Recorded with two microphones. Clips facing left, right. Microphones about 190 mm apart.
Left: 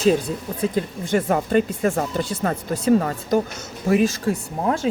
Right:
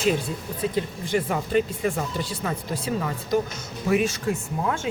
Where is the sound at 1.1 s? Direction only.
50° left (ahead or behind).